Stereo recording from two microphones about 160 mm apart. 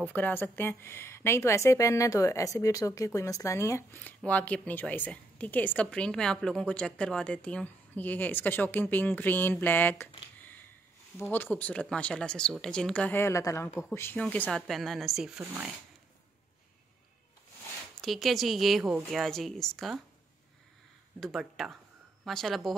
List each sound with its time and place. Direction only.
0.1 s a woman's voice: 10° left (ahead or behind)
11.3 s a woman's voice: 10° left (ahead or behind); by 15.7 s 10° right (ahead or behind)
18.0 s a woman's voice: centre (ahead or behind)
21.2 s a woman's voice: centre (ahead or behind)